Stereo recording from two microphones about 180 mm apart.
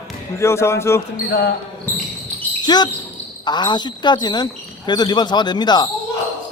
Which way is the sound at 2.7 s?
25° left (ahead or behind).